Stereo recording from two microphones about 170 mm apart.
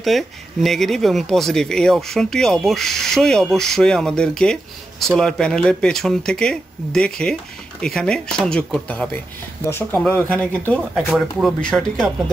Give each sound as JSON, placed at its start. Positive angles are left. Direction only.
{"t": 0.0, "sound": "speech", "side_deg": 0}